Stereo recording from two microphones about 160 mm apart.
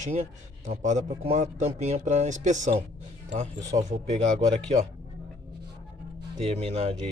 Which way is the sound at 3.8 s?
45° right (ahead or behind).